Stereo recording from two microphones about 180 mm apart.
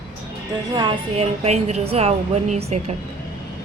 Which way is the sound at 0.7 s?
25° right (ahead or behind).